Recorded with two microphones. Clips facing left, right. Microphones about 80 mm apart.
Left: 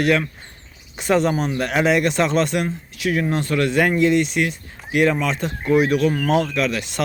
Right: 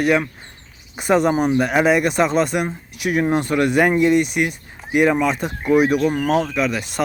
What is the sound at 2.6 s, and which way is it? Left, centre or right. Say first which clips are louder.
Speech: even; centre.